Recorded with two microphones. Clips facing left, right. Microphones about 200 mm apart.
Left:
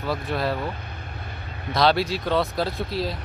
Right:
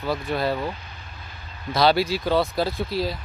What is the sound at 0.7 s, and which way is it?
Vehicle, 60° left (ahead or behind).